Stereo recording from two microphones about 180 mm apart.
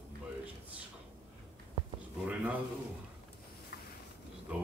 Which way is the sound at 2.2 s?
10° right (ahead or behind).